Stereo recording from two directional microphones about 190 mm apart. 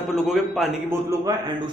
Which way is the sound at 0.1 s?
Centre (ahead or behind).